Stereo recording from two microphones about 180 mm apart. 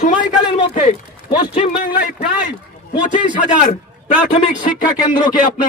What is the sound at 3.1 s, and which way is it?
Speech, 45° left (ahead or behind).